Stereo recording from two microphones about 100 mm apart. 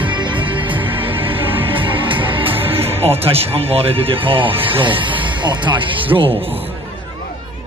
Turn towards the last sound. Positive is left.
turn(degrees=-55)  # may be behind; listen again after turning